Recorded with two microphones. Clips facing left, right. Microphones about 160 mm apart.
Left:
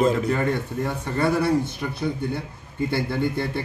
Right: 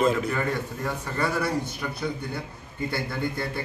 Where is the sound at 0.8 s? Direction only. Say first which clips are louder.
Left 5 dB; 25° left (ahead or behind).